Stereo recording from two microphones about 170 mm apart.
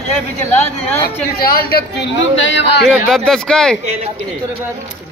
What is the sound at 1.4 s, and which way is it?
A man's voice, 65° left (ahead or behind).